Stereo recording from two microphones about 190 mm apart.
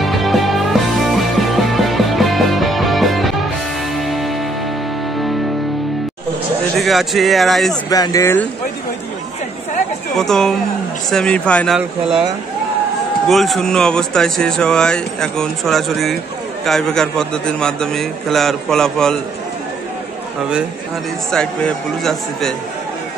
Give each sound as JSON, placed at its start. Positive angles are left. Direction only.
{"t": 0.0, "sound": "music", "side_deg": 0}
{"t": 6.8, "sound": "speech", "side_deg": 0}
{"t": 7.9, "sound": "speech", "side_deg": 20}
{"t": 10.1, "sound": "speech", "side_deg": 0}
{"t": 13.3, "sound": "speech", "side_deg": 0}
{"t": 21.3, "sound": "speech", "side_deg": 5}